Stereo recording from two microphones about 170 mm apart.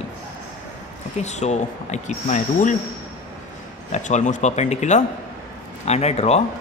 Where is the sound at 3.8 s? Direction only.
45° left (ahead or behind).